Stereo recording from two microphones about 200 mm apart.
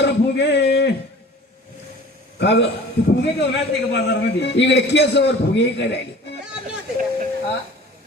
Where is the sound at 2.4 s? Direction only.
60° left (ahead or behind).